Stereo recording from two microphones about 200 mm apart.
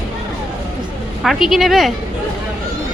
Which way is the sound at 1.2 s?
Centre (ahead or behind).